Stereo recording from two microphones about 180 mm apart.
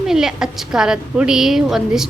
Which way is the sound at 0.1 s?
5° right (ahead or behind).